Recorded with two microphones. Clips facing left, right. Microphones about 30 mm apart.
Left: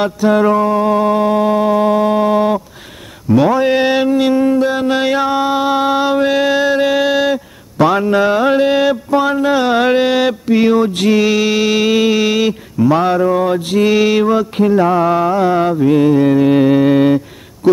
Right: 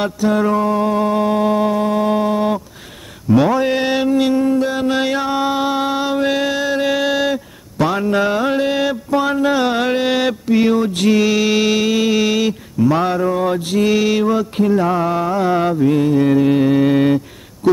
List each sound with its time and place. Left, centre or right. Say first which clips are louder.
0.3 s mantra: left 4 dB; centre
1.8 s music: left 5 dB; centre
2.0 s mantra: left 4 dB; centre
6.2 s a sound: left 5 dB; centre
9.2 s mantra: even; centre
11.7 s mantra: left 3 dB; left
16.5 s music: left 3 dB; centre
16.8 s mantra: left 3 dB; centre